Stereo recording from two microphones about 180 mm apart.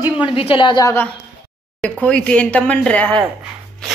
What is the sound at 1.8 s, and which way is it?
Speech, 5° left (ahead or behind).